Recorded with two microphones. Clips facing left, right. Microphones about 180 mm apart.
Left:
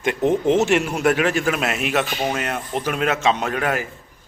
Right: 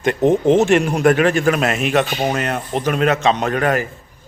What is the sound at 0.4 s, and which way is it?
Speech, 50° right (ahead or behind).